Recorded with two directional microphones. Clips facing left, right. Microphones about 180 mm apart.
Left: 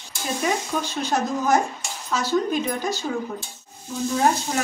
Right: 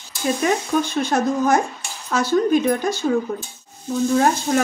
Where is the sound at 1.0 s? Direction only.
55° right (ahead or behind).